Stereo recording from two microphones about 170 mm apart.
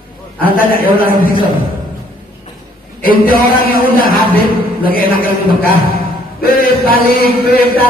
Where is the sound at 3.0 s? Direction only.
60° left (ahead or behind).